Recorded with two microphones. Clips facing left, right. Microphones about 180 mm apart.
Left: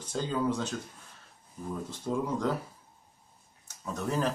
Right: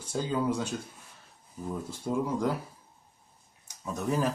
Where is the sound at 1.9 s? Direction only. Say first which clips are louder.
Right 1 dB; 10° right (ahead or behind).